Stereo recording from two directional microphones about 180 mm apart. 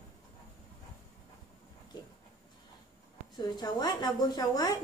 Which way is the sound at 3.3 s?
25° left (ahead or behind).